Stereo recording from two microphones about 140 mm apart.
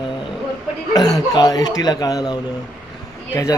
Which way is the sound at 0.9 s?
25° left (ahead or behind).